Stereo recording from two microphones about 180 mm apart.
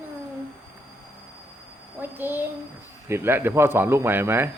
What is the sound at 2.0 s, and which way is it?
A man's voice, 10° right (ahead or behind).